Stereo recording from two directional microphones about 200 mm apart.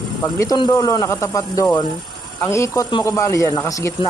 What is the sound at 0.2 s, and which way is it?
Speech, 15° left (ahead or behind).